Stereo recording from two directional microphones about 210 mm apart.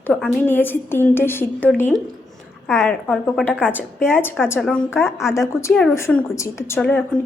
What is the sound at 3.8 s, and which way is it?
A woman's voice, 10° left (ahead or behind).